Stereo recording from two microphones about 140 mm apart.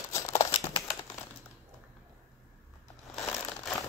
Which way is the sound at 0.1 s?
20° left (ahead or behind).